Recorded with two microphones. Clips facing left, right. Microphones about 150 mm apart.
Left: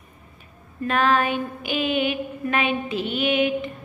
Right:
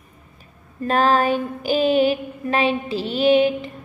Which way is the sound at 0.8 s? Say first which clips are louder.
Right 3 dB; 35° right (ahead or behind).